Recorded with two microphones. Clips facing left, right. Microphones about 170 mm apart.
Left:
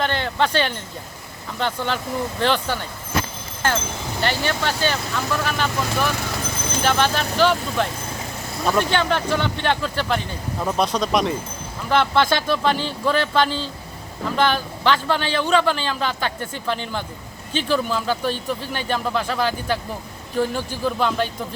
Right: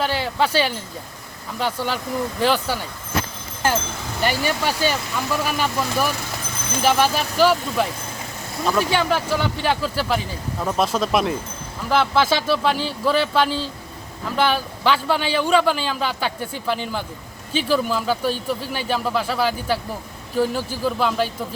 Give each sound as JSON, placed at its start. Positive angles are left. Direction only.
{"t": 0.0, "sound": "a man's voice", "side_deg": -5}
{"t": 4.2, "sound": "a man's voice", "side_deg": -10}